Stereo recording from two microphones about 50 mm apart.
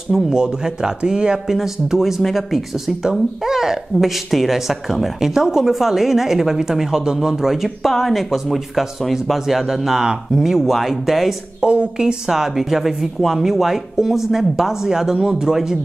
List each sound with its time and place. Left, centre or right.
0.3 s speech: centre
11.6 s speech: right